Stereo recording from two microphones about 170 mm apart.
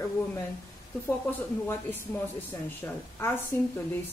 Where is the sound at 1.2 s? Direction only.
10° left (ahead or behind).